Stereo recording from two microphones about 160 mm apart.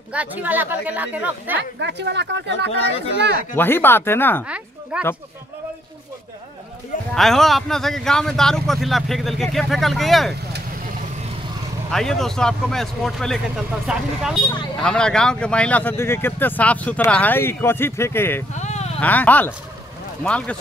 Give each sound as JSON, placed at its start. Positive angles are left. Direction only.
{"t": 0.1, "sound": "speech", "side_deg": -10}
{"t": 1.6, "sound": "speech", "side_deg": -90}
{"t": 3.5, "sound": "speech", "side_deg": 15}
{"t": 4.9, "sound": "speech", "side_deg": -5}
{"t": 7.2, "sound": "speech", "side_deg": 0}
{"t": 11.9, "sound": "speech", "side_deg": 0}
{"t": 18.6, "sound": "a sound", "side_deg": 45}
{"t": 18.9, "sound": "speech", "side_deg": 10}